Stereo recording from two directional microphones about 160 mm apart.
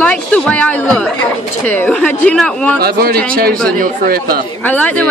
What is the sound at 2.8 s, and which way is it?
Speech, 75° right (ahead or behind).